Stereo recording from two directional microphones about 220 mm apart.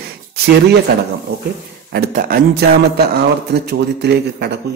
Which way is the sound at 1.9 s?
40° right (ahead or behind).